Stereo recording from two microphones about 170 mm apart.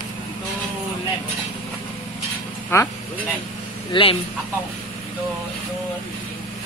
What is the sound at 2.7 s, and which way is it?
Speech, 15° left (ahead or behind).